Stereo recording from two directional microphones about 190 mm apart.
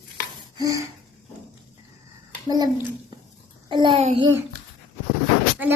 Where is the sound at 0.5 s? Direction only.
20° right (ahead or behind).